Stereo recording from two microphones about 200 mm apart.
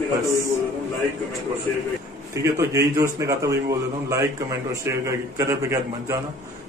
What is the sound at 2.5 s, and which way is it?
A man's voice, 15° right (ahead or behind).